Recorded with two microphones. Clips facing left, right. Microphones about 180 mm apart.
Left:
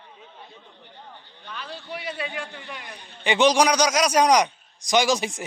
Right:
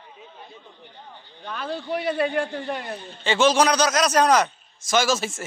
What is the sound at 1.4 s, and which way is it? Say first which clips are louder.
A man's voice: right 8 dB; 50° right (ahead or behind).